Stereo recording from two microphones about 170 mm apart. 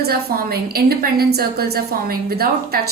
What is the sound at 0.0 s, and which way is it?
A woman's voice, 65° right (ahead or behind).